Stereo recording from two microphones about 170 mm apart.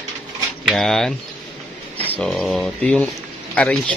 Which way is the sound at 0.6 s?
Centre (ahead or behind).